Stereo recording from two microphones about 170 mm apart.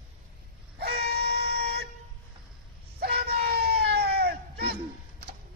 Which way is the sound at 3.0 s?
70° right (ahead or behind).